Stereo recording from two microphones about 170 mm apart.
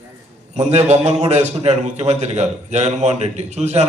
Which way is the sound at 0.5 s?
40° right (ahead or behind).